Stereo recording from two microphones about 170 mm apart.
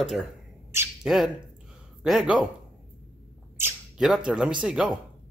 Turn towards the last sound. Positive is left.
turn(degrees=-5)  # may be behind; listen again after turning